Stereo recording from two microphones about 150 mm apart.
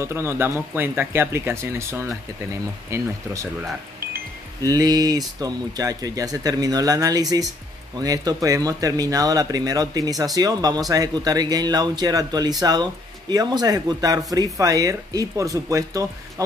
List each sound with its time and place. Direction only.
0.0 s speech: 15° right (ahead or behind)
4.6 s speech: 25° right (ahead or behind)